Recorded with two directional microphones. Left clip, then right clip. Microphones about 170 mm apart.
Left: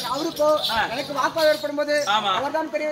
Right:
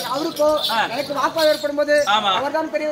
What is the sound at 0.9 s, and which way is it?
Speech, 5° left (ahead or behind).